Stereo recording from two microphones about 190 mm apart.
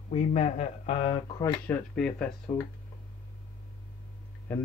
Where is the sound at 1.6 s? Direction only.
5° left (ahead or behind).